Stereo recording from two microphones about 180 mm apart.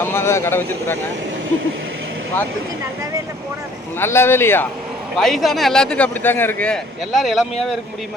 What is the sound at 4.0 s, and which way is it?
Speech, 15° left (ahead or behind).